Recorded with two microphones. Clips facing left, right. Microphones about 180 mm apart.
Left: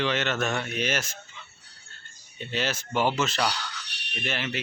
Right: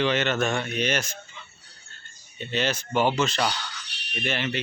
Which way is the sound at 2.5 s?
5° left (ahead or behind).